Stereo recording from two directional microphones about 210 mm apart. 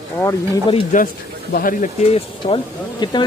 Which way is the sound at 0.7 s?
35° left (ahead or behind).